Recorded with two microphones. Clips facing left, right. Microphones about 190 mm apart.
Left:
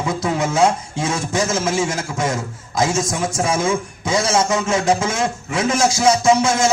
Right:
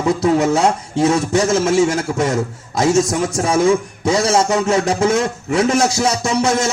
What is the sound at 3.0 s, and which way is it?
Speech, 65° right (ahead or behind).